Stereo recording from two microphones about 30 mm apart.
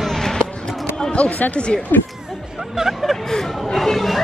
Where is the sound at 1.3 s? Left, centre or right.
Left.